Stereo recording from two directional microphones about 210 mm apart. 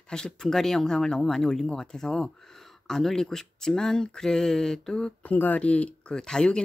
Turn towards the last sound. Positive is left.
turn(degrees=5)  # may be behind; listen again after turning